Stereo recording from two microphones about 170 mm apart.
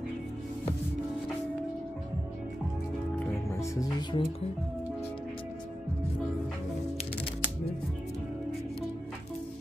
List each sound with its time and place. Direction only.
3.5 s speech: 20° left (ahead or behind)